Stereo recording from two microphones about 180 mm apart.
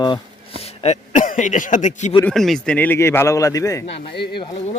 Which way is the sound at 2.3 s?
Centre (ahead or behind).